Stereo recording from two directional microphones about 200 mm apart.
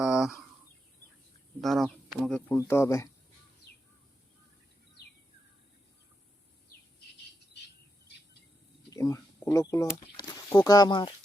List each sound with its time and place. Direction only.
0.0 s a sound: 5° right (ahead or behind)
1.6 s speech: centre (ahead or behind)
8.9 s speech: 15° left (ahead or behind)